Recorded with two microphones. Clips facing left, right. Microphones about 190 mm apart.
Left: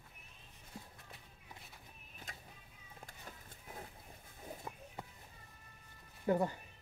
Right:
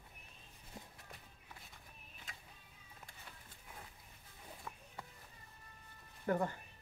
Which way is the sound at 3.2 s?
40° left (ahead or behind).